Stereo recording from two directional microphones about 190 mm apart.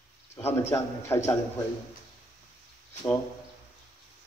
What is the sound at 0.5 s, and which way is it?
Speech, 15° left (ahead or behind).